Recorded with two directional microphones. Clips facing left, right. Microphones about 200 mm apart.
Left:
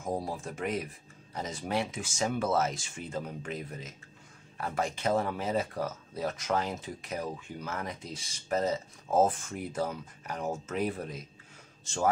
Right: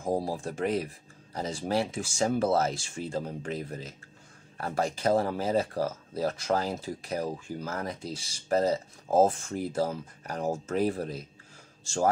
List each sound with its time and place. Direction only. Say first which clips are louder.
0.0 s speech: right 4 dB; 30° right (ahead or behind)